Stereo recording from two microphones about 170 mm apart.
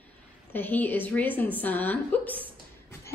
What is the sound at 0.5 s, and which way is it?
A woman's voice, 10° left (ahead or behind).